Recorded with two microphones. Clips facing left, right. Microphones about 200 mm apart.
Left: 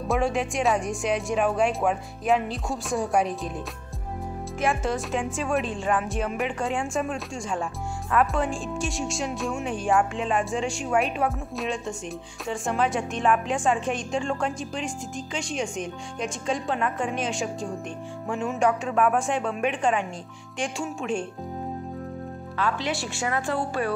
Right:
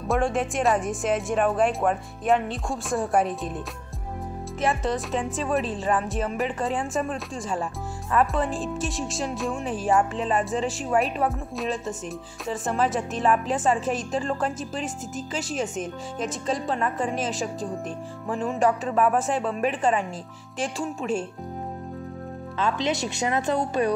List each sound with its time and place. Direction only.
0.1 s a woman's voice: centre (ahead or behind)
4.6 s a woman's voice: centre (ahead or behind)
22.6 s a woman's voice: 20° right (ahead or behind)